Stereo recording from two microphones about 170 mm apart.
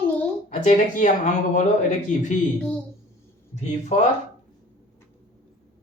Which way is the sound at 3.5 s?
45° left (ahead or behind).